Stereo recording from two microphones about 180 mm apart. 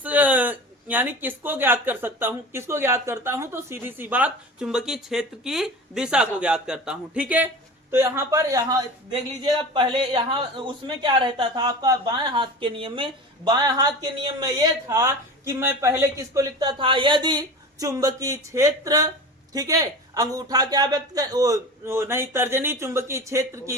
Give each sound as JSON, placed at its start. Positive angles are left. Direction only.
{"t": 0.0, "sound": "speech", "side_deg": -10}